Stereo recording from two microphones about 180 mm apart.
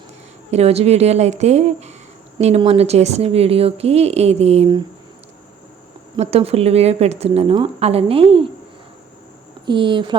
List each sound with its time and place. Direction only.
0.5 s speech: 35° right (ahead or behind)
6.1 s speech: 35° right (ahead or behind)
9.6 s speech: 25° right (ahead or behind)